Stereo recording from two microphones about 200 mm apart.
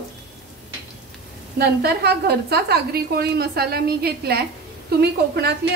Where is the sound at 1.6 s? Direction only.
50° right (ahead or behind).